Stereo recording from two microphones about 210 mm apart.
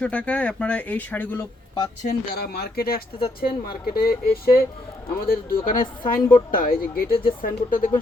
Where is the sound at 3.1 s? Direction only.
25° left (ahead or behind).